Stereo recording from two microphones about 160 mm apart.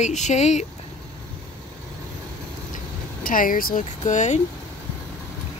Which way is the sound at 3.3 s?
60° left (ahead or behind).